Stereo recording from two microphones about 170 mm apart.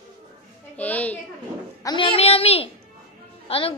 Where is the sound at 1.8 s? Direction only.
25° left (ahead or behind).